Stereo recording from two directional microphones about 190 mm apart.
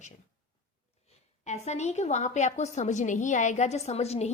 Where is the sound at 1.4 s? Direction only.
35° left (ahead or behind).